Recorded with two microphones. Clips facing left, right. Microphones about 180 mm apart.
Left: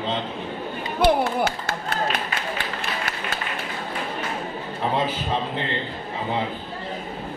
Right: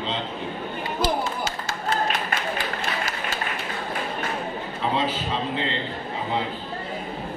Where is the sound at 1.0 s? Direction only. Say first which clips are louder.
Left 7 dB; 60° left (ahead or behind).